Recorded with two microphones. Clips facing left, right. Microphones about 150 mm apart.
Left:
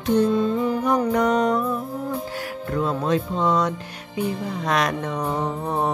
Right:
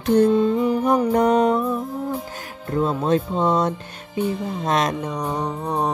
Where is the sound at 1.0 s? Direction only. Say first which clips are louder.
Right 3 dB; 30° right (ahead or behind).